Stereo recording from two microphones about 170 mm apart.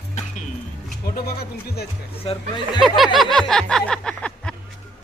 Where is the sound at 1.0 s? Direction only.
60° left (ahead or behind).